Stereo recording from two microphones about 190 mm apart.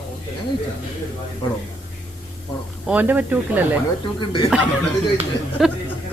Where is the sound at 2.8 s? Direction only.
10° right (ahead or behind).